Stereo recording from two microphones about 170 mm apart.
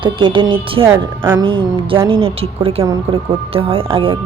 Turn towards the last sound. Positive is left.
turn(degrees=-30)  # may be behind; listen again after turning